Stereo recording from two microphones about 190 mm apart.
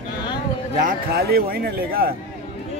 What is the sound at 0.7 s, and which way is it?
A man's voice, 55° right (ahead or behind).